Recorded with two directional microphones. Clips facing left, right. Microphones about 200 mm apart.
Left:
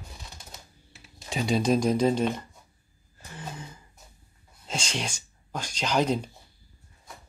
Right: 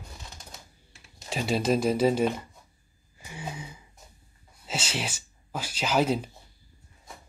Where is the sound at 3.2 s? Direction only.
10° right (ahead or behind).